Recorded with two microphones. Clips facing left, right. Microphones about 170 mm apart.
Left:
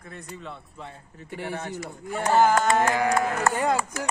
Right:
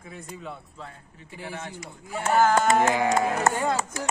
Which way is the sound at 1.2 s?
65° left (ahead or behind).